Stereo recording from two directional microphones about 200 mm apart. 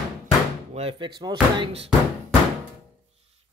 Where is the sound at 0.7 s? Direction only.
25° right (ahead or behind).